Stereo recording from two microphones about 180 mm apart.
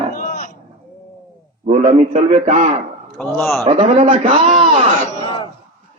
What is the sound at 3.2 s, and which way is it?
Speech, centre (ahead or behind).